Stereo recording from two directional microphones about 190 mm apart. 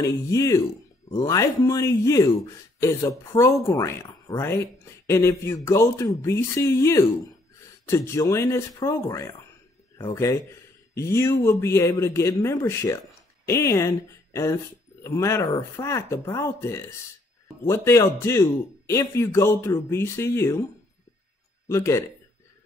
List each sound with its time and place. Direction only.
0.0 s a man's voice: 15° left (ahead or behind)
21.6 s a man's voice: 15° left (ahead or behind)